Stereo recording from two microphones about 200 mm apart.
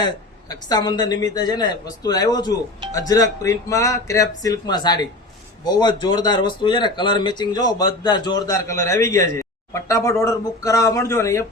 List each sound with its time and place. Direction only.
0.5 s speech: 20° left (ahead or behind)